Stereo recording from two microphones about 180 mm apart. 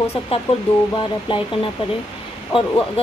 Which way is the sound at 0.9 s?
30° left (ahead or behind).